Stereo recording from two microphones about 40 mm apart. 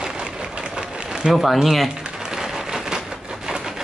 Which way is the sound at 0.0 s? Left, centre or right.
Centre.